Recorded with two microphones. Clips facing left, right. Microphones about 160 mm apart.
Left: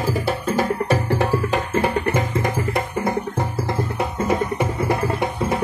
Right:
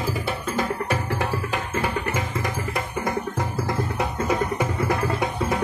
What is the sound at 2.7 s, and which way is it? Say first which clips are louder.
Music: left 4 dB; 30° left (ahead or behind).